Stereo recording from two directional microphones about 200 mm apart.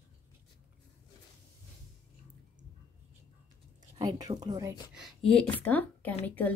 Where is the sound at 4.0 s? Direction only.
20° right (ahead or behind).